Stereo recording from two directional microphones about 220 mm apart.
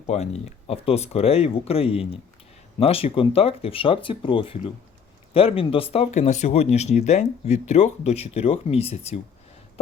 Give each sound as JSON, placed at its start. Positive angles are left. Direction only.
{"t": 0.1, "sound": "speech", "side_deg": 30}